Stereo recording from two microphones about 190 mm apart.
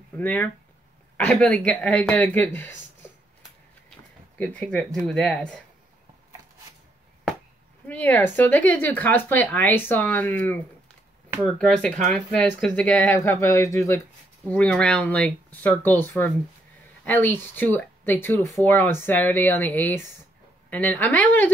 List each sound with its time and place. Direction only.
0.2 s speech: 10° left (ahead or behind)
4.4 s speech: 5° left (ahead or behind)
7.9 s speech: 10° left (ahead or behind)